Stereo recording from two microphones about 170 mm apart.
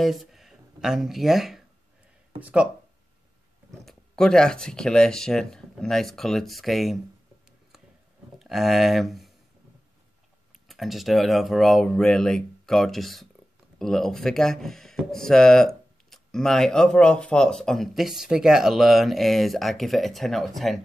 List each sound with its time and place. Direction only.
0.0 s speech: centre (ahead or behind)
3.8 s speech: 5° left (ahead or behind)
8.4 s speech: centre (ahead or behind)
10.7 s speech: centre (ahead or behind)